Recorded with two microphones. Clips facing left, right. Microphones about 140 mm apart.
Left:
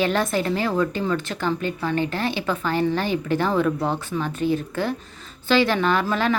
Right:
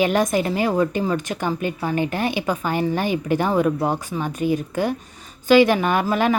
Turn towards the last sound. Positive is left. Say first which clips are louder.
# right 2 dB
turn(degrees=-15)  # may be behind; listen again after turning